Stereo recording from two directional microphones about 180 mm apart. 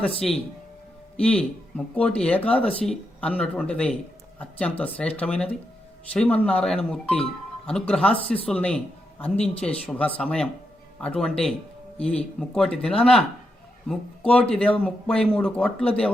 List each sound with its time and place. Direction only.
0.2 s speech: 35° left (ahead or behind)
1.1 s a man's voice: 5° left (ahead or behind)